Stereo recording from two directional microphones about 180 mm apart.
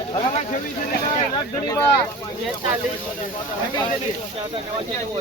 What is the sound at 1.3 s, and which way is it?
Speech, 20° left (ahead or behind).